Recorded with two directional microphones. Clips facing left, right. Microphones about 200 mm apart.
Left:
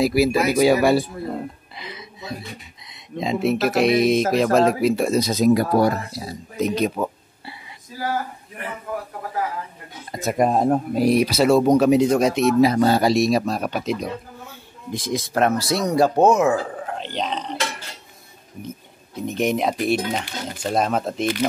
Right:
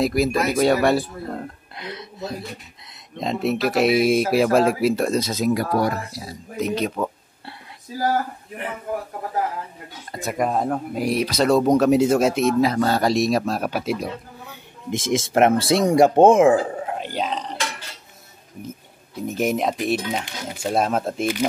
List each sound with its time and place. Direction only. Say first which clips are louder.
0.0 s speech: left 2 dB; 5° left (ahead or behind)
5.5 s speech: left 4 dB; 30° left (ahead or behind)
6.7 s speech: left 1 dB; 15° left (ahead or behind)
7.4 s a sound: even; centre (ahead or behind)
10.3 s speech: left 4 dB; 30° left (ahead or behind)
11.1 s speech: even; 5° left (ahead or behind)
12.5 s speech: left 3 dB; 15° left (ahead or behind)
13.0 s speech: left 1 dB; centre (ahead or behind)
14.9 s speech: right 3 dB; 25° right (ahead or behind)
16.8 s speech: right 1 dB; 10° right (ahead or behind)
19.2 s speech: left 1 dB; 5° right (ahead or behind)